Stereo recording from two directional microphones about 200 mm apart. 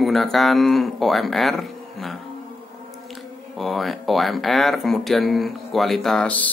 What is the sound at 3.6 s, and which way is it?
Speech, centre (ahead or behind).